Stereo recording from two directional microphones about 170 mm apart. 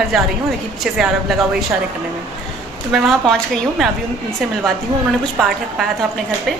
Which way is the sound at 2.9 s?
Centre (ahead or behind).